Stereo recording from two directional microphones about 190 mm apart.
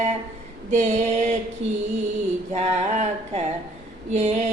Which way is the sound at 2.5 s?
35° right (ahead or behind).